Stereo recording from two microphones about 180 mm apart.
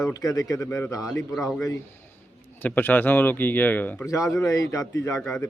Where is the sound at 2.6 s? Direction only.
10° left (ahead or behind).